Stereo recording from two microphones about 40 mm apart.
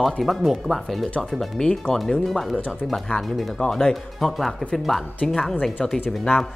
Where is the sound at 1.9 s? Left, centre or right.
Centre.